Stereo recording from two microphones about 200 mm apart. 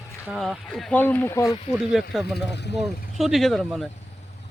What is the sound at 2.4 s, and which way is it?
Speech, 60° left (ahead or behind).